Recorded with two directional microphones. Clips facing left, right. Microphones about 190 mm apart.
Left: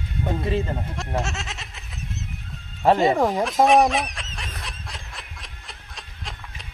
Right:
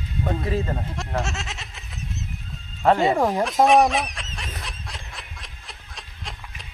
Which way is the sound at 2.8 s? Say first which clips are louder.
Left 1 dB; 15° left (ahead or behind).